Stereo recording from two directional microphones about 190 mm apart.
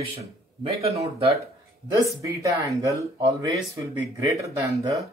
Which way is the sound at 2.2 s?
15° right (ahead or behind).